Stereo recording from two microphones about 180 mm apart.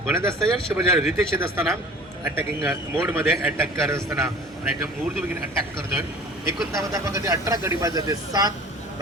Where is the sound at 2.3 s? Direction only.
10° right (ahead or behind).